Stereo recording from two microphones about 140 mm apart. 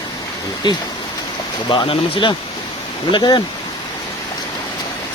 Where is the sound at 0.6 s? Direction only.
35° left (ahead or behind).